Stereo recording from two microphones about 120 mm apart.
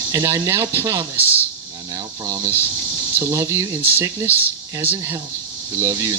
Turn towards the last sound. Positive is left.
turn(degrees=-30)  # may be behind; listen again after turning